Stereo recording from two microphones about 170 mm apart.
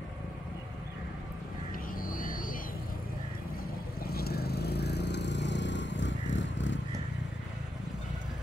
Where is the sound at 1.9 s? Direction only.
55° left (ahead or behind).